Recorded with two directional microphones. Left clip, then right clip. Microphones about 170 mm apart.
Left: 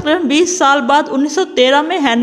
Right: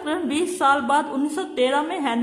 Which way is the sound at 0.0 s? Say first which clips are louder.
Left 11 dB; 35° left (ahead or behind).